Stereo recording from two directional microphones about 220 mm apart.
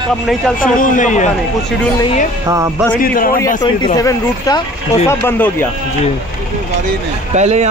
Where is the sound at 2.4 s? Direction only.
15° right (ahead or behind).